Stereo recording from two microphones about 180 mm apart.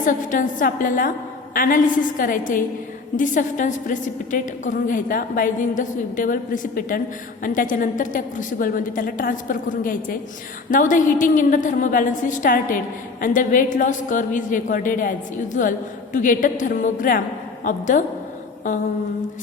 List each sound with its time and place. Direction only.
0.0 s a woman's voice: 45° left (ahead or behind)